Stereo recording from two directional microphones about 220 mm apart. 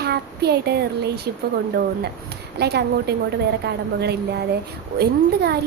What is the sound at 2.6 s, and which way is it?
A woman's voice, 50° right (ahead or behind).